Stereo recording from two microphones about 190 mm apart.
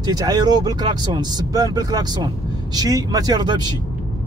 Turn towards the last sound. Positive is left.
turn(degrees=-20)  # may be behind; listen again after turning